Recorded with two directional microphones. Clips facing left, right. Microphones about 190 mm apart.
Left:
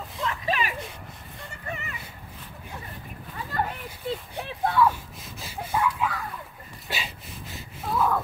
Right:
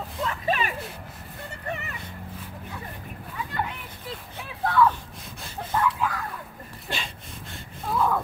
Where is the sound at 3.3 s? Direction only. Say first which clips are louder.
Left 2 dB; 40° left (ahead or behind).